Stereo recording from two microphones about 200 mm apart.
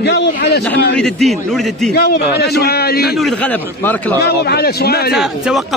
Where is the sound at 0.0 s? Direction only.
55° left (ahead or behind).